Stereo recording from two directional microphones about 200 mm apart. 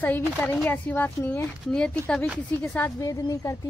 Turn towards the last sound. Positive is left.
turn(degrees=15)  # may be behind; listen again after turning